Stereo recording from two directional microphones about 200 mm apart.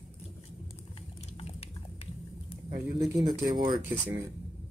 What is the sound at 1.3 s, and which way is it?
Biting, 30° left (ahead or behind).